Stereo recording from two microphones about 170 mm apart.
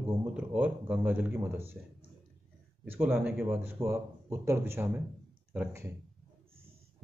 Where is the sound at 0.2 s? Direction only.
5° right (ahead or behind).